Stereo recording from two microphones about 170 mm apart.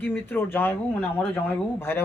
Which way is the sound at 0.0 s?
10° left (ahead or behind).